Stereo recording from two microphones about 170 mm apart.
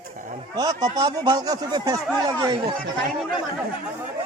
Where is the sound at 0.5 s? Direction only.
20° right (ahead or behind).